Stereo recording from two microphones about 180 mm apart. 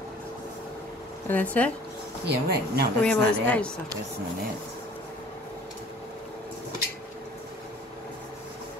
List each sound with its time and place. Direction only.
1.3 s speech: 10° left (ahead or behind)
2.2 s speech: 60° right (ahead or behind)
3.0 s speech: 5° left (ahead or behind)